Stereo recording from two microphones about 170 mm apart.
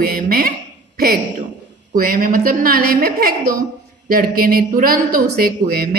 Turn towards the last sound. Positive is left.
turn(degrees=-65)  # may be behind; listen again after turning